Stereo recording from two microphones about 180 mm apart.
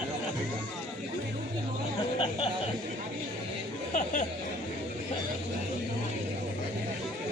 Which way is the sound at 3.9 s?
45° left (ahead or behind).